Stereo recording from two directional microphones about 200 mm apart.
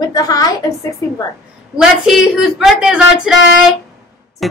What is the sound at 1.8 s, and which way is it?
Music, centre (ahead or behind).